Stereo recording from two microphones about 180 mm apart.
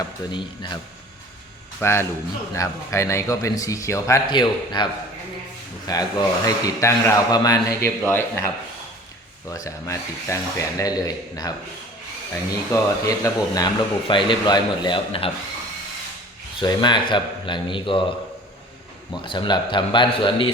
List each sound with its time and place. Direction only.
0.3 s speech: 25° left (ahead or behind)
1.8 s a man's voice: 15° left (ahead or behind)
5.9 s speech: 20° left (ahead or behind)
9.5 s a man's voice: 15° left (ahead or behind)
16.6 s speech: 25° left (ahead or behind)
19.1 s speech: 25° left (ahead or behind)